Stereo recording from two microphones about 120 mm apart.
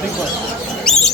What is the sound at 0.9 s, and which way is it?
Rodents, 5° left (ahead or behind).